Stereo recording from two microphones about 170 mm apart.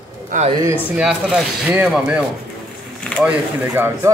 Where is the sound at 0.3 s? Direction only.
50° right (ahead or behind).